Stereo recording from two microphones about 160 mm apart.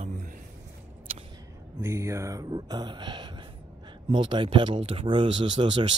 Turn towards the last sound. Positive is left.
turn(degrees=-30)  # may be behind; listen again after turning